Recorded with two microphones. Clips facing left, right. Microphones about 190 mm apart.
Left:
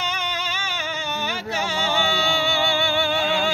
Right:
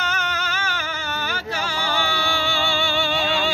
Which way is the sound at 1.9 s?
20° left (ahead or behind).